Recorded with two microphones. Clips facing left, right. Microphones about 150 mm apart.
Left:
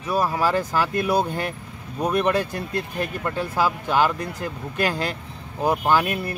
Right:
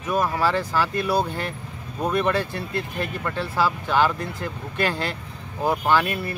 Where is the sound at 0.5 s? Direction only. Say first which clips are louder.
Left 1 dB; 45° left (ahead or behind).